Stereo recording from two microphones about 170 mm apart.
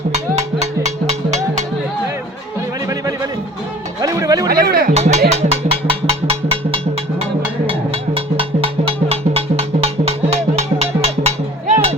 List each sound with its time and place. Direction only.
0.1 s a sound: 40° right (ahead or behind)
2.8 s a sound: 20° right (ahead or behind)
4.0 s music: 20° right (ahead or behind)
4.4 s music: 60° right (ahead or behind)
4.9 s music: 40° right (ahead or behind)
5.3 s percussion: 40° right (ahead or behind)
7.7 s music: 35° right (ahead or behind)